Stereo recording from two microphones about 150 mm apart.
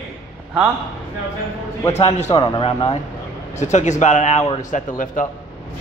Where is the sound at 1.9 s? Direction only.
45° left (ahead or behind).